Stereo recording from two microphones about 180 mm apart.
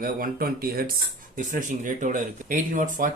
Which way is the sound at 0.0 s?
50° right (ahead or behind).